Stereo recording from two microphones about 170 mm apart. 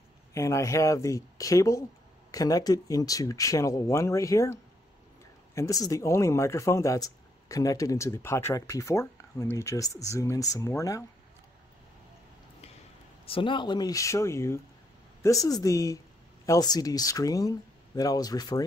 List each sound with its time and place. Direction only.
0.3 s speech: 15° left (ahead or behind)
13.2 s speech: 30° left (ahead or behind)